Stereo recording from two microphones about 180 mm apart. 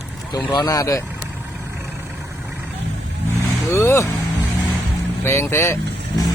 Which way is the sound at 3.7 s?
15° left (ahead or behind).